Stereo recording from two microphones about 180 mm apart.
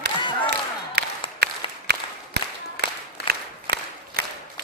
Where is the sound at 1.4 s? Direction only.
65° right (ahead or behind).